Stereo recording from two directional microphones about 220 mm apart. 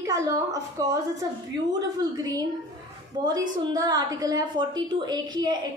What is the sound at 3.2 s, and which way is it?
A woman's voice, 15° right (ahead or behind).